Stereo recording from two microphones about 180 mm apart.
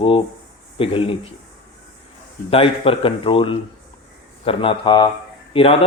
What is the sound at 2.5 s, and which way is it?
A man's voice, 30° left (ahead or behind).